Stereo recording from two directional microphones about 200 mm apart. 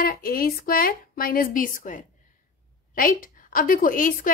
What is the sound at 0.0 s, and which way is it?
A woman's voice, 45° left (ahead or behind).